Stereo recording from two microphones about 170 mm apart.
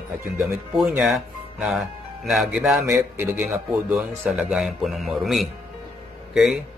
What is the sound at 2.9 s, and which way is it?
A man's voice, 15° right (ahead or behind).